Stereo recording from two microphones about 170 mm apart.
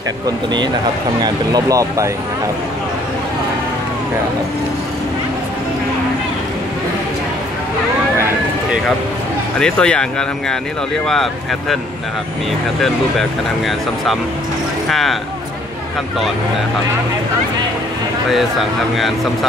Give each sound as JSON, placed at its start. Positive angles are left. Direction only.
{"t": 1.2, "sound": "speech", "side_deg": -20}
{"t": 9.6, "sound": "speech", "side_deg": 5}
{"t": 12.8, "sound": "speech", "side_deg": 0}
{"t": 18.3, "sound": "speech", "side_deg": 0}